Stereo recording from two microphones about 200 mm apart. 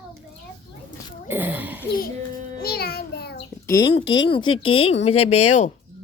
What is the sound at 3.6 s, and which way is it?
Speech, 15° left (ahead or behind).